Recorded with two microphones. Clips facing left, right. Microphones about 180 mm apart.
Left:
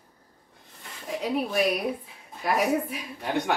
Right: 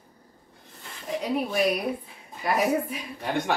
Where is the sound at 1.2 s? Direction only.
Centre (ahead or behind).